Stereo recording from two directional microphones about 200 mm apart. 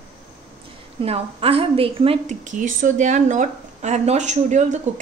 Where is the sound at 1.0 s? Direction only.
30° right (ahead or behind).